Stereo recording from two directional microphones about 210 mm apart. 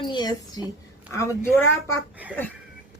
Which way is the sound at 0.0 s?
20° left (ahead or behind).